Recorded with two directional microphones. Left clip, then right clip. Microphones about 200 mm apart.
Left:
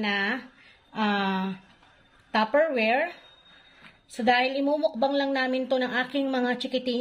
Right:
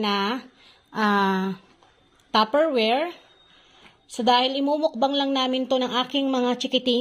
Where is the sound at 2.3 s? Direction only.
35° right (ahead or behind).